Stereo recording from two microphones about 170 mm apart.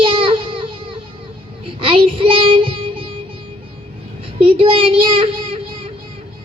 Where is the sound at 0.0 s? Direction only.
30° right (ahead or behind).